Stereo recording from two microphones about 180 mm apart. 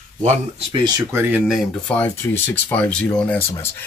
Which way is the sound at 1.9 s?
10° left (ahead or behind).